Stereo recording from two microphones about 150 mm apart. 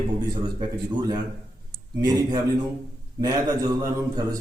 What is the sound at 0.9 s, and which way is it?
A man's voice, 30° right (ahead or behind).